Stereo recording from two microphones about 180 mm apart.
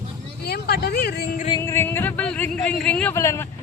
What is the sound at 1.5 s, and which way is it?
A man's voice, 15° left (ahead or behind).